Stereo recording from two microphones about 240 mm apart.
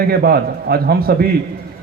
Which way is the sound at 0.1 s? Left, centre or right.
Right.